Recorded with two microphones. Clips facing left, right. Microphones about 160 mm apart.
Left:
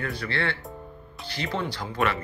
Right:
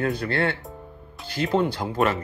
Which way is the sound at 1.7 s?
40° right (ahead or behind).